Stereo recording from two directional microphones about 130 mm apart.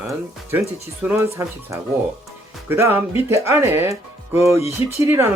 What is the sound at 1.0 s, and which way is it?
Speech, 20° right (ahead or behind).